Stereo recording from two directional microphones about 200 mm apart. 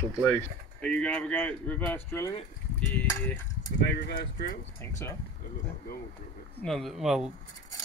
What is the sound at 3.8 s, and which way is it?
Speech, 60° left (ahead or behind).